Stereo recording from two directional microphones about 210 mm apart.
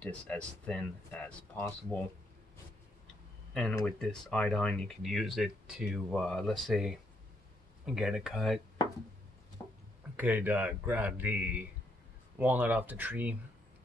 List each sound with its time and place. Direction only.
0.0 s speech: 5° left (ahead or behind)
3.5 s speech: 5° left (ahead or behind)
9.6 s a sound: 20° left (ahead or behind)
10.1 s speech: 10° right (ahead or behind)